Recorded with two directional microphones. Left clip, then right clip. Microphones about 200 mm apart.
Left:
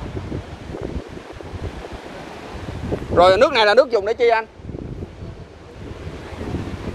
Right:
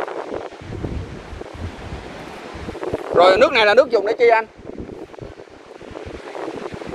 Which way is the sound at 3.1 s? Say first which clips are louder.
Even; 5° left (ahead or behind).